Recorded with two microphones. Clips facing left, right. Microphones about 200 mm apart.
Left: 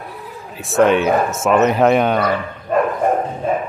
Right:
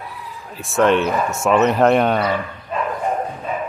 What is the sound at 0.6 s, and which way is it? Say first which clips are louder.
Speech: left 2 dB; centre (ahead or behind).